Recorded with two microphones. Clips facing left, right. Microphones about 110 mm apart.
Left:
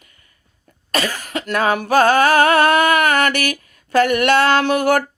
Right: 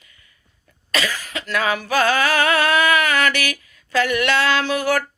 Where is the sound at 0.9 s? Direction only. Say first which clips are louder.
Left 3 dB; 45° left (ahead or behind).